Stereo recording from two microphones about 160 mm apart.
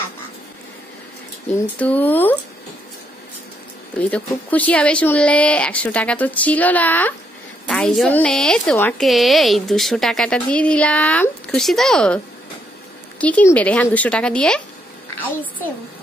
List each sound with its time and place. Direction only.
1.8 s speech: 10° left (ahead or behind)
4.0 s a woman's voice: 10° left (ahead or behind)
13.2 s speech: 10° left (ahead or behind)